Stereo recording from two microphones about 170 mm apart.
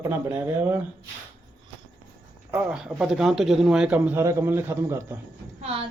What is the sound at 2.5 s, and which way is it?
Speech, 5° right (ahead or behind).